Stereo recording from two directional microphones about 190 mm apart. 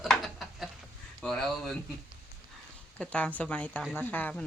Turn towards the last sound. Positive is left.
turn(degrees=10)  # may be behind; listen again after turning